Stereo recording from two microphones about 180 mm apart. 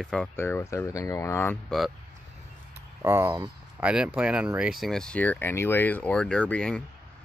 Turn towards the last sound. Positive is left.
turn(degrees=5)  # may be behind; listen again after turning